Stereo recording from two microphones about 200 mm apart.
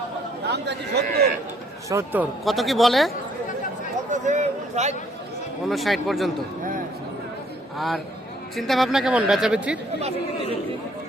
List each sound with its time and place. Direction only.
0.4 s a man's voice: 55° right (ahead or behind)
1.9 s speech: 15° right (ahead or behind)
2.4 s speech: centre (ahead or behind)
4.1 s a man's voice: 35° right (ahead or behind)
5.6 s speech: centre (ahead or behind)
7.8 s speech: centre (ahead or behind)